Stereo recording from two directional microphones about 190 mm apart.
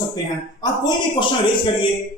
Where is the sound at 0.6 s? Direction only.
20° left (ahead or behind).